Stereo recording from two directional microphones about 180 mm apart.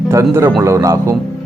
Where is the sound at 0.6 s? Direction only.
15° right (ahead or behind).